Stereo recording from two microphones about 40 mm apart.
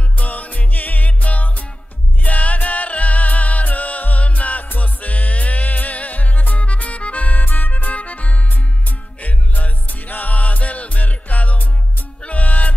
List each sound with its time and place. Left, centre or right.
0.2 s music: left